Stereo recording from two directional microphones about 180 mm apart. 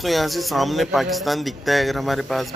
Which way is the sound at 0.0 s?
Centre (ahead or behind).